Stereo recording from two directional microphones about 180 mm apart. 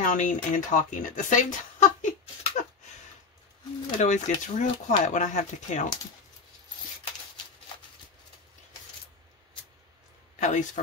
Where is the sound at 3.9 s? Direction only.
40° left (ahead or behind).